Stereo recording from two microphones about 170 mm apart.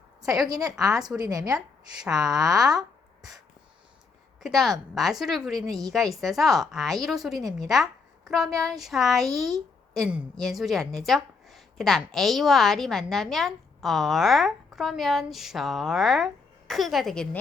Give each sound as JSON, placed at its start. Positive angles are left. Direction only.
{"t": 0.4, "sound": "a woman's voice", "side_deg": -20}
{"t": 4.4, "sound": "a woman's voice", "side_deg": 0}